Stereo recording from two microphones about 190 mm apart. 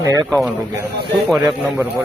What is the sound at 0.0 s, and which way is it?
Speech, 20° right (ahead or behind).